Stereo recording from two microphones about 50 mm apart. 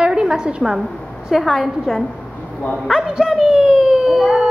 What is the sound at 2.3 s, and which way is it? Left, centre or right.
Dog, left.